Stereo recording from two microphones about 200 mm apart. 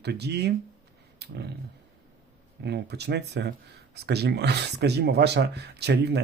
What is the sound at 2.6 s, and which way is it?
Speech, 55° right (ahead or behind).